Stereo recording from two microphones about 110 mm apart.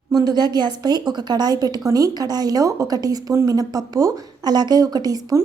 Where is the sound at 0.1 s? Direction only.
35° right (ahead or behind).